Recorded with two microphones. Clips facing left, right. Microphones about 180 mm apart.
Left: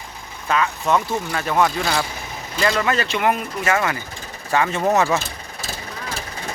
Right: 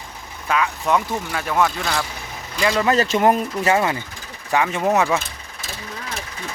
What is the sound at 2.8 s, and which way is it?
Speech, 35° right (ahead or behind).